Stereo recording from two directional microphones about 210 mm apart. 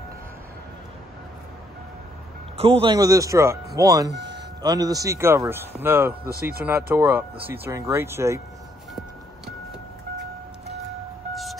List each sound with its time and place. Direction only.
2.5 s speech: 25° right (ahead or behind); by 8.4 s 10° right (ahead or behind)